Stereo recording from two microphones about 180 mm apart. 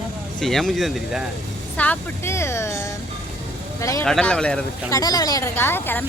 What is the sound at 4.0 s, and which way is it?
Speech, 5° left (ahead or behind).